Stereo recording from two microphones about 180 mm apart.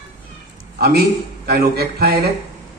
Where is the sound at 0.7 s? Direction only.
60° right (ahead or behind).